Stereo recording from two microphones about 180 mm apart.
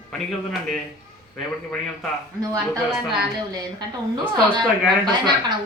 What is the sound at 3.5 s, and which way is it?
Speech, 20° right (ahead or behind).